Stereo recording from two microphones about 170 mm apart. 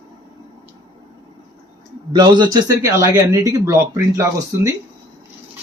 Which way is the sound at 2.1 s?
25° right (ahead or behind).